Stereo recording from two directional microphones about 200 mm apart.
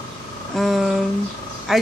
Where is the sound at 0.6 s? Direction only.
Centre (ahead or behind).